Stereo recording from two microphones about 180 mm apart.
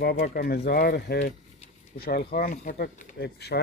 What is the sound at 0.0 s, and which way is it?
Speech, 55° left (ahead or behind).